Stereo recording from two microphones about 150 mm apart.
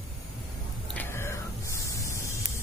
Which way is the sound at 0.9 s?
15° left (ahead or behind).